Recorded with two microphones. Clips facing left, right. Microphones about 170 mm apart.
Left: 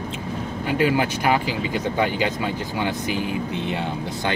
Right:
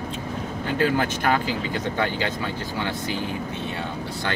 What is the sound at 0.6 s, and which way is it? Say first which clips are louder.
Speech: left 2 dB; 15° left (ahead or behind).